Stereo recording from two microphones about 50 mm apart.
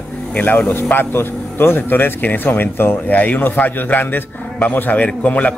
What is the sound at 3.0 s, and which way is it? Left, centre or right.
A man's voice, left.